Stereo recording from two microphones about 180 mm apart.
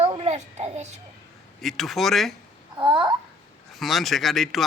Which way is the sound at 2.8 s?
25° right (ahead or behind).